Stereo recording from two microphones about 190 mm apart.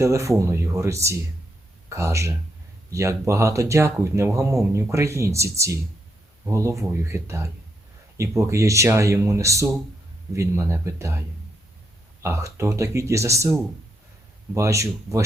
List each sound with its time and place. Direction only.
0.0 s speech: 15° right (ahead or behind)
12.2 s speech: 15° right (ahead or behind)
14.5 s speech: 15° right (ahead or behind)